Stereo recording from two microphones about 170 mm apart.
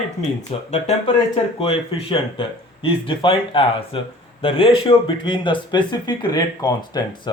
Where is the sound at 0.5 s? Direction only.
35° left (ahead or behind).